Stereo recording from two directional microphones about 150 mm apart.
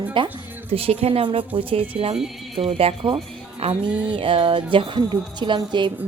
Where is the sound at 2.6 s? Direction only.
40° right (ahead or behind).